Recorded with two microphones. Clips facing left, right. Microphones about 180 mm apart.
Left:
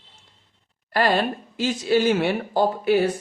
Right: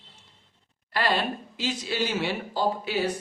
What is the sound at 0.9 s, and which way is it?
Speech, 50° left (ahead or behind).